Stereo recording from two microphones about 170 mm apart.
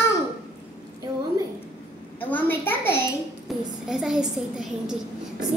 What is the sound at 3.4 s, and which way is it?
A woman's voice, centre (ahead or behind).